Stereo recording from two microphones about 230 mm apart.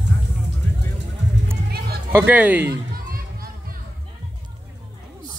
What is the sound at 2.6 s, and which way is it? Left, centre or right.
Children playing, right.